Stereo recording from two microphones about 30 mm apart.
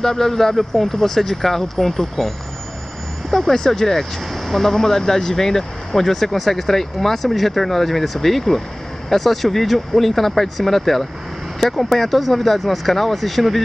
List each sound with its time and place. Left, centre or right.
0.0 s speech: centre
3.5 s speech: left
4.3 s speech: centre